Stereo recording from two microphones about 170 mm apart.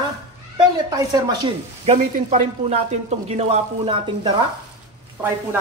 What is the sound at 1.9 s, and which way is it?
Sizzle, 45° right (ahead or behind).